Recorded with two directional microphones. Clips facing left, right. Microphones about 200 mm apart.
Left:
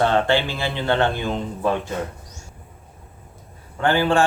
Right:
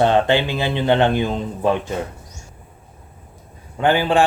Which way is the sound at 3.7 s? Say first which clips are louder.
Right 2 dB; 15° right (ahead or behind).